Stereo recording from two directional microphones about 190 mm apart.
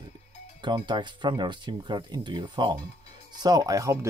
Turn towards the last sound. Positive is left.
turn(degrees=-15)  # may be behind; listen again after turning